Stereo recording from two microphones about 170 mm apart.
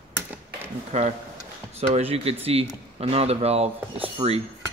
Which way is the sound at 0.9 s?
40° right (ahead or behind).